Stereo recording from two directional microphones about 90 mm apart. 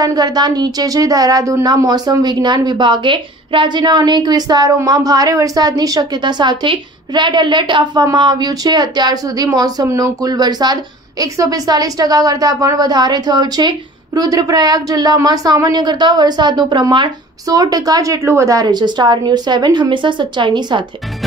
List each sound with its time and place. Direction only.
0.0 s a woman's voice: 50° right (ahead or behind)